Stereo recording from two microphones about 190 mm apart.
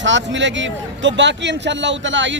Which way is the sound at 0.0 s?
70° right (ahead or behind).